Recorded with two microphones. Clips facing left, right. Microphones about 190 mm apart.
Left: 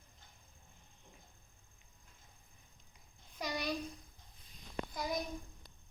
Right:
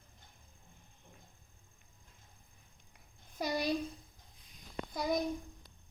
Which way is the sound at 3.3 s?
35° right (ahead or behind).